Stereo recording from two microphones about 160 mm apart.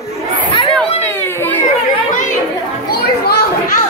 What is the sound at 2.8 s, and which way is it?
Children playing, 70° left (ahead or behind).